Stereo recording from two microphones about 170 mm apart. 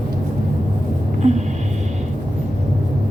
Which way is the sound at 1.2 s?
45° right (ahead or behind).